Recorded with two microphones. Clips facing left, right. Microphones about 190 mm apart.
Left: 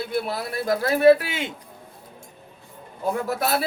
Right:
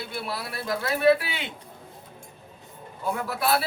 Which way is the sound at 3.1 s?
45° left (ahead or behind).